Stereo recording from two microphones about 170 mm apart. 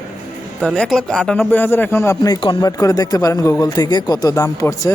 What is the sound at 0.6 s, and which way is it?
A man's voice, centre (ahead or behind).